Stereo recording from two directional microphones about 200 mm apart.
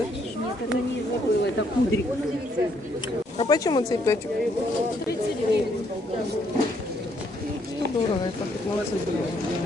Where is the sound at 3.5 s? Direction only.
20° left (ahead or behind).